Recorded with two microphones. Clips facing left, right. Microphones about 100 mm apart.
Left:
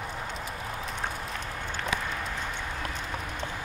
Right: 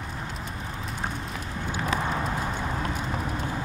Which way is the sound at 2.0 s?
30° right (ahead or behind).